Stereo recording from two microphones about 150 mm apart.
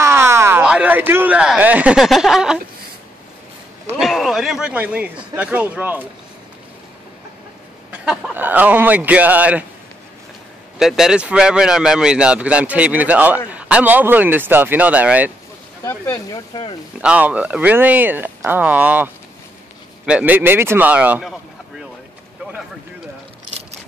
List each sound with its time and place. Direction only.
0.0 s speech: 15° right (ahead or behind)
4.0 s a man's voice: centre (ahead or behind)
7.9 s a man's voice: 10° right (ahead or behind)
10.8 s a man's voice: 5° right (ahead or behind)
15.8 s speech: 20° left (ahead or behind)
17.0 s a man's voice: 10° right (ahead or behind)
20.1 s a man's voice: 10° right (ahead or behind)